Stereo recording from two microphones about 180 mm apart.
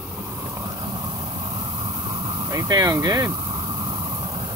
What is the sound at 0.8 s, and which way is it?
Vehicle, 30° right (ahead or behind).